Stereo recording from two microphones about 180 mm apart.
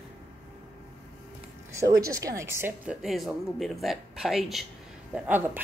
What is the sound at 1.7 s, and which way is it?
Speech, 20° right (ahead or behind).